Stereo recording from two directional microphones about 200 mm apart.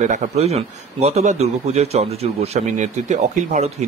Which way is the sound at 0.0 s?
35° right (ahead or behind).